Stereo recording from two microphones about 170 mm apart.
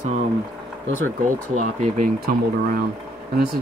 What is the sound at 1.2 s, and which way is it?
Speech, 50° right (ahead or behind).